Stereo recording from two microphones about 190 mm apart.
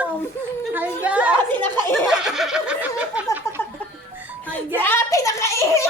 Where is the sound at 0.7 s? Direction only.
10° right (ahead or behind).